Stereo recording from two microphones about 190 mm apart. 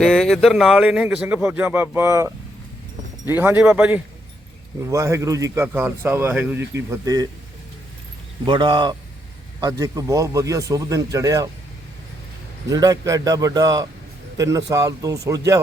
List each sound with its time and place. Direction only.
0.0 s speech: centre (ahead or behind); by 7.3 s 20° right (ahead or behind)
8.4 s a man's voice: 25° right (ahead or behind)
12.6 s a man's voice: 20° right (ahead or behind)